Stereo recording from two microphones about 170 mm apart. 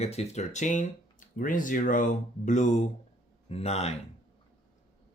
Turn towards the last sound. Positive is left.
turn(degrees=40)  # may be behind; listen again after turning